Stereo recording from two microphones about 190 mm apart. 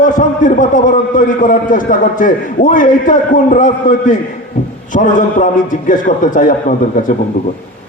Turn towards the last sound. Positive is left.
turn(degrees=45)  # may be behind; listen again after turning